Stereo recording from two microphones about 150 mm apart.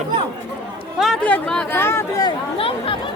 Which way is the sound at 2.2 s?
35° left (ahead or behind).